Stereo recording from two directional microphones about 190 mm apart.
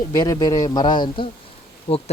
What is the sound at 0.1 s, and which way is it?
Speech, 20° left (ahead or behind).